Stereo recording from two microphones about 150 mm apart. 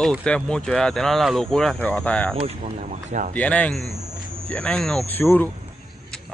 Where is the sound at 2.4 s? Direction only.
45° right (ahead or behind).